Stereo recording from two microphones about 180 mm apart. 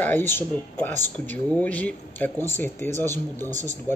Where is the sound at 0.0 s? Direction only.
10° left (ahead or behind).